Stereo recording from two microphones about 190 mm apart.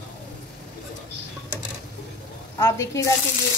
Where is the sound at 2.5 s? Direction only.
15° left (ahead or behind).